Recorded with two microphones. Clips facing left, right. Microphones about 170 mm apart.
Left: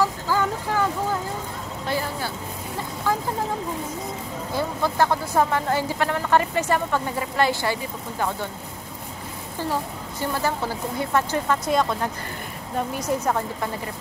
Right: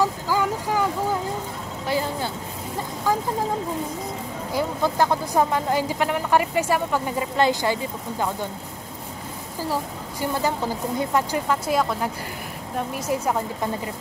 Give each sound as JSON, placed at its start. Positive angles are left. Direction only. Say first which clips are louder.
{"t": 0.0, "sound": "speech", "louder": "even", "side_deg": -10}
{"t": 1.9, "sound": "speech", "louder": "right 2 dB", "side_deg": -20}
{"t": 4.6, "sound": "speech", "louder": "right 1 dB", "side_deg": -15}
{"t": 10.2, "sound": "a woman's voice", "louder": "right 1 dB", "side_deg": -15}